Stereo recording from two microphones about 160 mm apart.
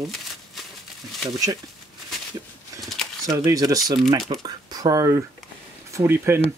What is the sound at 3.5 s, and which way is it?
Speech, 20° right (ahead or behind).